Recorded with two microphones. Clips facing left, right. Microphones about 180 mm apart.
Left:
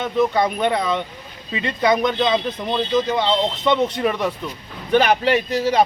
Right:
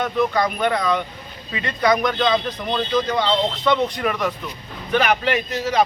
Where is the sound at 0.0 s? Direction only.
25° left (ahead or behind).